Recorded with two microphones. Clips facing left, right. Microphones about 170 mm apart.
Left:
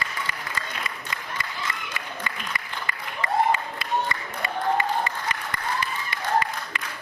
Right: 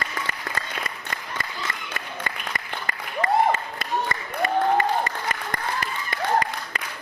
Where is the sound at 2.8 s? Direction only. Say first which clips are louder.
Right 7 dB; 45° right (ahead or behind).